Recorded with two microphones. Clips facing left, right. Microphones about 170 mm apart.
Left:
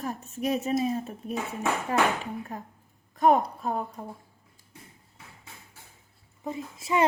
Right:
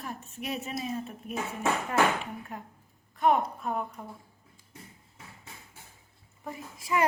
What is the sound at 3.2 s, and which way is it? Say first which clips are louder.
Speech: left 3 dB; 40° left (ahead or behind).